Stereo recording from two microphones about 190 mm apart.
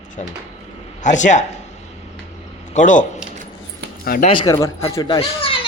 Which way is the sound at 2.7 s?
40° left (ahead or behind).